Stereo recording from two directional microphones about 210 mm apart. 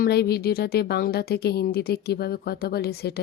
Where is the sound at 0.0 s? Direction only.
50° left (ahead or behind).